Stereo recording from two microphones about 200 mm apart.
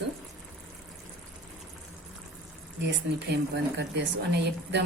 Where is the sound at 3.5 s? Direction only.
60° right (ahead or behind).